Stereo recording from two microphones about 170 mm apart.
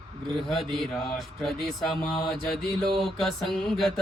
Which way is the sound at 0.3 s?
Centre (ahead or behind).